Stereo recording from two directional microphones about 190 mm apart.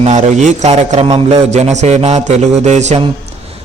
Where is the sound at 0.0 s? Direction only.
35° right (ahead or behind).